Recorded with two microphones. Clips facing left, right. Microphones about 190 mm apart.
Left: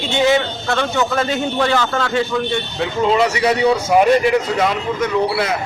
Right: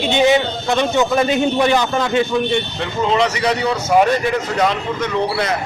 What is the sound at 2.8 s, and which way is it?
A man's voice, 5° left (ahead or behind).